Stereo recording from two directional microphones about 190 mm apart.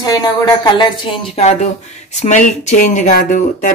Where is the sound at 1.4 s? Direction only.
35° left (ahead or behind).